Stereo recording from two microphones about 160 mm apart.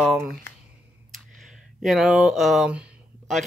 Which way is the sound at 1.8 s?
Centre (ahead or behind).